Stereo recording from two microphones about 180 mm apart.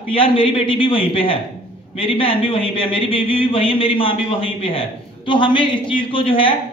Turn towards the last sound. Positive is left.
turn(degrees=30)  # may be behind; listen again after turning